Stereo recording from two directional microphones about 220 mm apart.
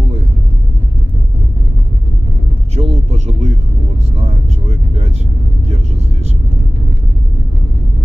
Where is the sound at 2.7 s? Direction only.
30° right (ahead or behind).